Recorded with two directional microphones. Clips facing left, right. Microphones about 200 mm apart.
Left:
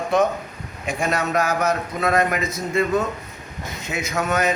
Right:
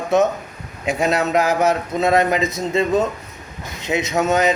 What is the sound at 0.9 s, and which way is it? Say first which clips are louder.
A man's voice: right 4 dB; 20° right (ahead or behind).